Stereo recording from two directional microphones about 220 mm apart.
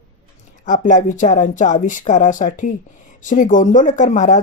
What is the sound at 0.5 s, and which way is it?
Speech, 35° left (ahead or behind).